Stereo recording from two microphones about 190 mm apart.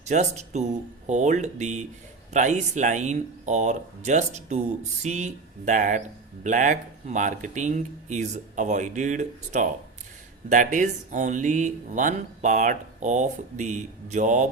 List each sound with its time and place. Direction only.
0.0 s speech: 35° right (ahead or behind)